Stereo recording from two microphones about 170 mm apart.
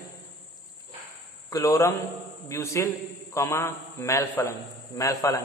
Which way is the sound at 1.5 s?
20° left (ahead or behind).